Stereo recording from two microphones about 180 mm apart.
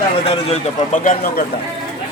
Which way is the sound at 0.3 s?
35° left (ahead or behind).